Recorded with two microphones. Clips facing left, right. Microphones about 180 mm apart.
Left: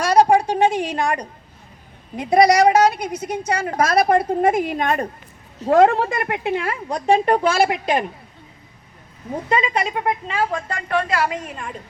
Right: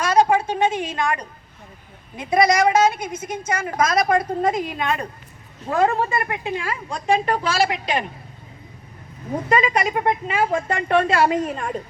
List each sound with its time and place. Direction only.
0.0 s a sound: 35° left (ahead or behind)
0.7 s a woman's voice: 10° left (ahead or behind)
0.9 s a woman's voice: 35° left (ahead or behind)
4.4 s a woman's voice: 55° left (ahead or behind)
5.7 s a woman's voice: 75° left (ahead or behind); by 8.0 s 50° left (ahead or behind)
9.5 s speech: 25° left (ahead or behind)
10.2 s a woman's voice: 20° right (ahead or behind); by 11.8 s 45° right (ahead or behind)